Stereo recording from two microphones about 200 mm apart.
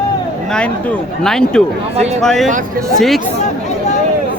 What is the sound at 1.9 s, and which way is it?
Speech, 35° right (ahead or behind).